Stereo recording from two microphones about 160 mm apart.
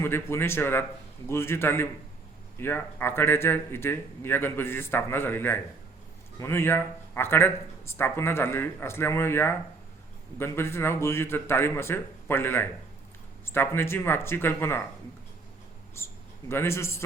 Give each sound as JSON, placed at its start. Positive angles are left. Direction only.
{"t": 0.0, "sound": "speech", "side_deg": 15}
{"t": 16.0, "sound": "a man's voice", "side_deg": 15}